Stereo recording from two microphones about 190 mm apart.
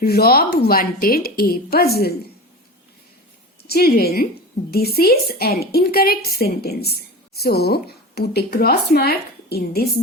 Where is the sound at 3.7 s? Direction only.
55° left (ahead or behind).